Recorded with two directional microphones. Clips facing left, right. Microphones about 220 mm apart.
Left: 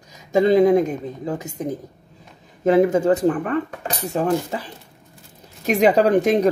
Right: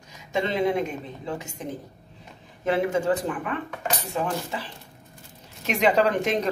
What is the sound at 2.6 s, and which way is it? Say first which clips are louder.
Speech: left 8 dB; 40° left (ahead or behind).